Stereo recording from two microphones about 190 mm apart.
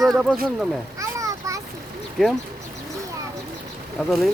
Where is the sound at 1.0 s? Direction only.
15° right (ahead or behind).